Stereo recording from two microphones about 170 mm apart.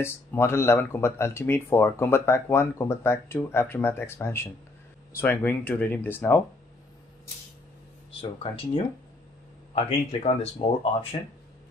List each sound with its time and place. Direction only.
0.0 s speech: 15° left (ahead or behind)
8.2 s speech: 35° left (ahead or behind)
10.4 s speech: 35° left (ahead or behind)